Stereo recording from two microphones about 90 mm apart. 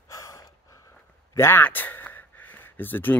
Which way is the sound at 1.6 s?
20° left (ahead or behind).